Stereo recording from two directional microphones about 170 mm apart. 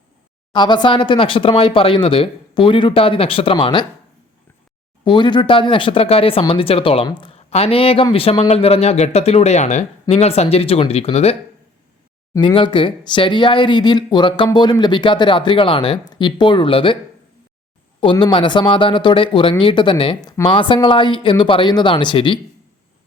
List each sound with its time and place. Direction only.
0.5 s speech: 25° left (ahead or behind)
5.0 s speech: 25° left (ahead or behind)
18.0 s speech: 30° left (ahead or behind)